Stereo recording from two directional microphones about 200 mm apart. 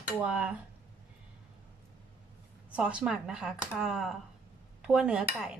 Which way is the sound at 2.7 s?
5° right (ahead or behind).